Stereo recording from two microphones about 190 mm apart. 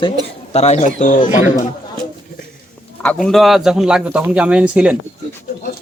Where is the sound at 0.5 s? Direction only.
35° left (ahead or behind).